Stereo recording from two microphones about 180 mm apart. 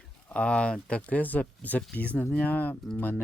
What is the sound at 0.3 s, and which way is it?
Speech, 5° left (ahead or behind).